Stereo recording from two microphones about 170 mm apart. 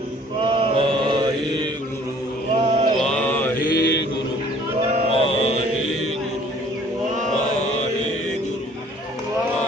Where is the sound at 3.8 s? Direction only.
90° left.